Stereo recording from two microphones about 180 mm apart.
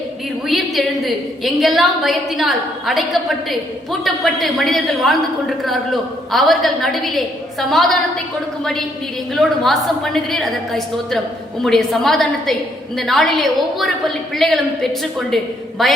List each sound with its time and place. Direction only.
0.4 s a woman's voice: centre (ahead or behind)
9.3 s a woman's voice: centre (ahead or behind)